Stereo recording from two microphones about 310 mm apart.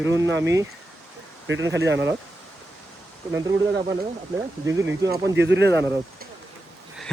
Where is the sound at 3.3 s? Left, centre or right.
Centre.